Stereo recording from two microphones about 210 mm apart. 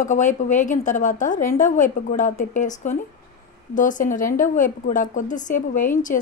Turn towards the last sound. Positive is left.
turn(degrees=40)  # may be behind; listen again after turning